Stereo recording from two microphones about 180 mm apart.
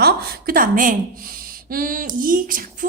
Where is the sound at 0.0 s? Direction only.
55° right (ahead or behind).